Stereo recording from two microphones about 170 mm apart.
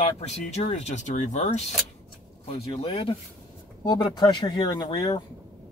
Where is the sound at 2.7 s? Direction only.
30° left (ahead or behind).